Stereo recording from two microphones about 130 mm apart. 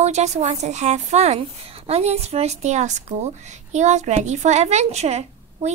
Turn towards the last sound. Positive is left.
turn(degrees=-55)  # may be behind; listen again after turning